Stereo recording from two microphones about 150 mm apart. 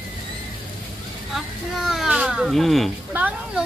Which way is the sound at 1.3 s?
Centre (ahead or behind).